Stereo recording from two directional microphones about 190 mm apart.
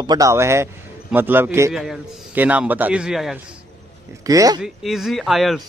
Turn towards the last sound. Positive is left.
turn(degrees=0)  # may be behind; listen again after turning